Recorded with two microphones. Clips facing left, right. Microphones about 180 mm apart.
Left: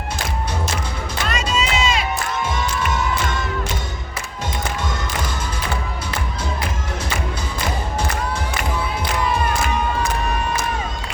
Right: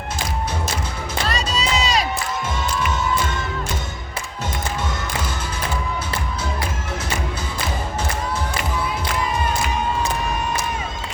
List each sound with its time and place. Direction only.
1.3 s crowd: 35° right (ahead or behind)